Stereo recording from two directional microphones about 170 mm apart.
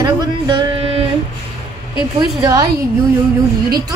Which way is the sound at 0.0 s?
25° right (ahead or behind).